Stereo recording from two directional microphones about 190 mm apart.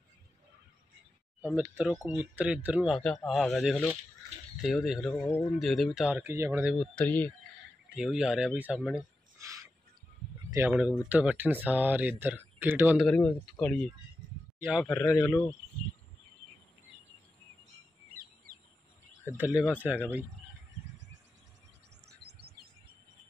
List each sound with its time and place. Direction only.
1.4 s speech: 5° right (ahead or behind)
6.7 s speech: 5° left (ahead or behind)
7.9 s speech: 5° right (ahead or behind)
10.7 s speech: 5° right (ahead or behind)
13.0 s a man's voice: 5° left (ahead or behind)
14.9 s speech: 10° left (ahead or behind)
19.2 s speech: 10° right (ahead or behind)
22.2 s chirp: 55° right (ahead or behind)